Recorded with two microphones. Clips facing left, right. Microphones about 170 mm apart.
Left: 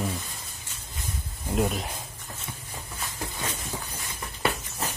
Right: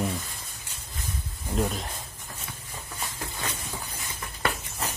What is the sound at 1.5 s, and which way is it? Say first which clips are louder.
Speech: left 2 dB; 5° left (ahead or behind).